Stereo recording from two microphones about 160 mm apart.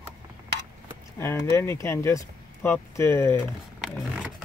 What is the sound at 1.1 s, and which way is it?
Speech, 15° left (ahead or behind).